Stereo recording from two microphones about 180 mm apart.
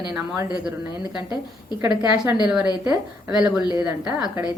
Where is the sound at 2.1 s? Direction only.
10° right (ahead or behind).